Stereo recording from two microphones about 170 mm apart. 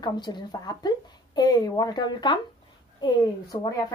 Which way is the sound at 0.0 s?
25° left (ahead or behind).